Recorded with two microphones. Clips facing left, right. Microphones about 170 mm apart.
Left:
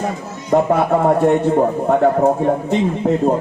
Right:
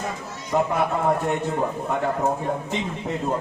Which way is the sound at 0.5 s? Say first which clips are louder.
Left 8 dB; 55° left (ahead or behind).